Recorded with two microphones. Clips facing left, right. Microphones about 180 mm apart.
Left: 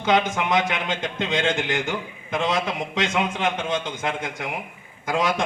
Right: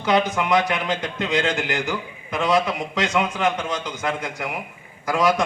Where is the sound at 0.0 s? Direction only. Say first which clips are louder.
Right 1 dB; 20° left (ahead or behind).